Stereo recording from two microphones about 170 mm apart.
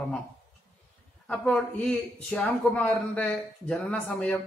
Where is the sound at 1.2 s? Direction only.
5° left (ahead or behind).